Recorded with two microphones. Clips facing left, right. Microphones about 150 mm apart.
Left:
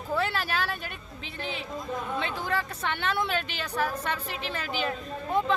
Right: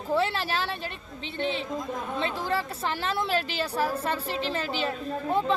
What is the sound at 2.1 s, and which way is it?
A woman's voice, 30° right (ahead or behind).